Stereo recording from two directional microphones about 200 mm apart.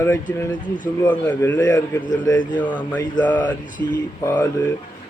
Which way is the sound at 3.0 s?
20° left (ahead or behind).